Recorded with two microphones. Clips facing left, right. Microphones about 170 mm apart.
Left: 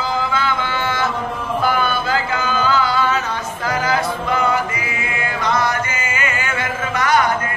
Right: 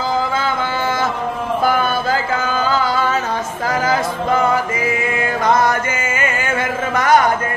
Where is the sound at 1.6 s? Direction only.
40° right (ahead or behind).